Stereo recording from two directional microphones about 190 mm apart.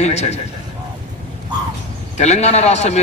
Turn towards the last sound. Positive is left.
turn(degrees=35)  # may be behind; listen again after turning